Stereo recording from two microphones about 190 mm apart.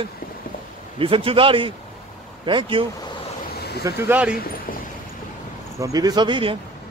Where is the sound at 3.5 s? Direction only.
55° left (ahead or behind).